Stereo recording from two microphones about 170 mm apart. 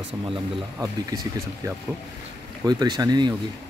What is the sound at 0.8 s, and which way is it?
Speech, 20° right (ahead or behind).